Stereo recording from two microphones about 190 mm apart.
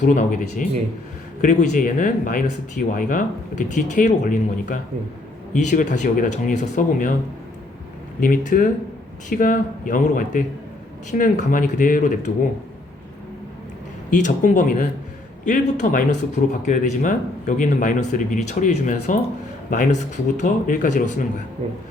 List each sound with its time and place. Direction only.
0.0 s speech: 40° left (ahead or behind)
8.2 s speech: 45° left (ahead or behind)
14.1 s speech: 40° left (ahead or behind)